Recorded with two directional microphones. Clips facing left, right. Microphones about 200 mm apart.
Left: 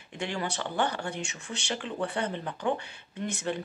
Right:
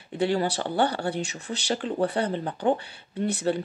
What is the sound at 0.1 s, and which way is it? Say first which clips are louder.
Speech: right 9 dB; 35° right (ahead or behind).